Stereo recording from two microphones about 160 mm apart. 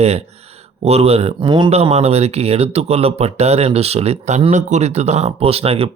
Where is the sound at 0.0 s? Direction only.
40° right (ahead or behind).